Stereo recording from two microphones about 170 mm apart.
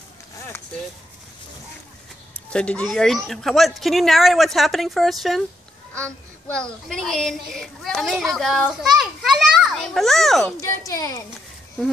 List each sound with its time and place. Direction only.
2.5 s a child's voice: 5° left (ahead or behind)
10.9 s a child's voice: 20° left (ahead or behind)